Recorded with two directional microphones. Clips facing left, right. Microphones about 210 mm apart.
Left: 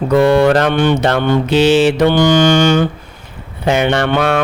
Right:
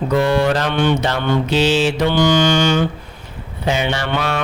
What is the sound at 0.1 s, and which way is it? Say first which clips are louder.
Mantra: left 6 dB; 55° left (ahead or behind).